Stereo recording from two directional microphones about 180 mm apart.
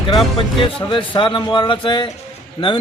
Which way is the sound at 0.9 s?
25° left (ahead or behind).